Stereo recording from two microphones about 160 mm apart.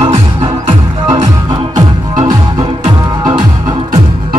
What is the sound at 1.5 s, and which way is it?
Music, 25° right (ahead or behind).